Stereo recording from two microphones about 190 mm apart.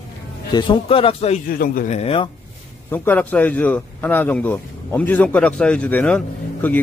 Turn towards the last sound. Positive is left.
turn(degrees=5)  # may be behind; listen again after turning